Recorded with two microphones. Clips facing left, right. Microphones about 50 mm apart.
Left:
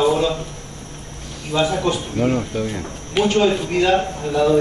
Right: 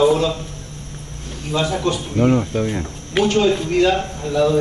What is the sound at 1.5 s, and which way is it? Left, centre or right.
Speech, centre.